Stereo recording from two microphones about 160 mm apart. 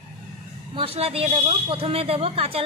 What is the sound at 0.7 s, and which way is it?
A woman's voice, 35° right (ahead or behind).